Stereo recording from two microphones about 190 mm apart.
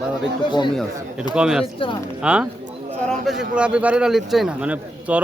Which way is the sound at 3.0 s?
Centre (ahead or behind).